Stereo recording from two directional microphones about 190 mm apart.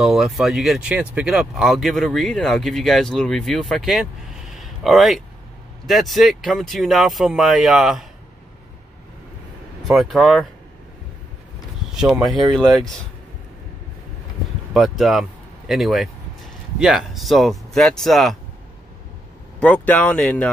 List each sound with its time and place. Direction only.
0.0 s speech: centre (ahead or behind)
4.6 s a sound: centre (ahead or behind)
5.9 s speech: centre (ahead or behind)
9.8 s speech: centre (ahead or behind)
11.9 s speech: 5° right (ahead or behind)
14.7 s speech: centre (ahead or behind)
19.6 s speech: 10° left (ahead or behind)